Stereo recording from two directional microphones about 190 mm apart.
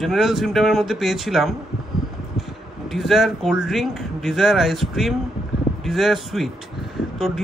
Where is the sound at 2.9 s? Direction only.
Centre (ahead or behind).